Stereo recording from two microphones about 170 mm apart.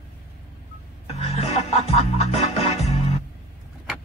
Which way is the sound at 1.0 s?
35° left (ahead or behind).